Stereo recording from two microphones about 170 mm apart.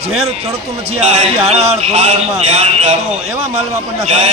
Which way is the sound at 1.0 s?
40° right (ahead or behind).